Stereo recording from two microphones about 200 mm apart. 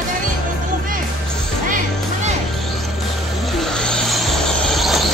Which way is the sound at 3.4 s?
Centre (ahead or behind).